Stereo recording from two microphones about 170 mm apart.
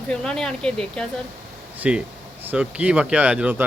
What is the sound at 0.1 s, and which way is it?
Speech, 5° left (ahead or behind).